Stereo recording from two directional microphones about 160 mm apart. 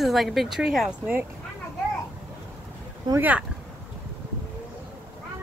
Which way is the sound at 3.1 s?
10° right (ahead or behind).